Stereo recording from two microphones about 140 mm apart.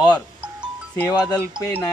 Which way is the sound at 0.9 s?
20° left (ahead or behind).